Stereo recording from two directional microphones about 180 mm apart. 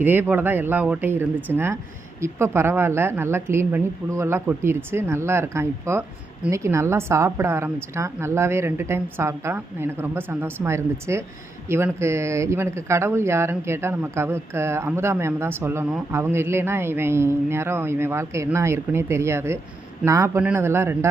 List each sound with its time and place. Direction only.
0.0 s a woman's voice: 10° right (ahead or behind)